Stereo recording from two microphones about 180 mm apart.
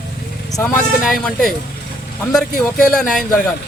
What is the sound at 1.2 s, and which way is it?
Speech, centre (ahead or behind).